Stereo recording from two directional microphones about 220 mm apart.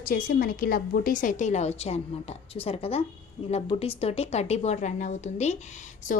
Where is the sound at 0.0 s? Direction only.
40° left (ahead or behind).